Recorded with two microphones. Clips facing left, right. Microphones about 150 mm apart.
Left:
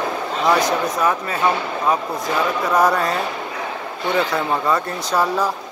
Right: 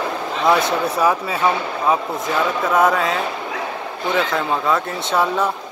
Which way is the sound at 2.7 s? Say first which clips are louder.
Right 1 dB; centre (ahead or behind).